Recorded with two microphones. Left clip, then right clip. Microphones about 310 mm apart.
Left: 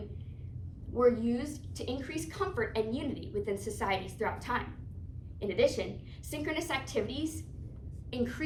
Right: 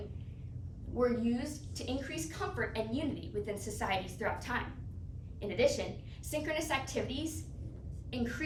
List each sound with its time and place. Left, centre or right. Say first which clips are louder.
0.9 s a woman's voice: left 5 dB; centre